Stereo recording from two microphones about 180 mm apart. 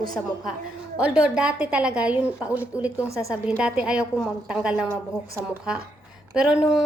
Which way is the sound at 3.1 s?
15° left (ahead or behind).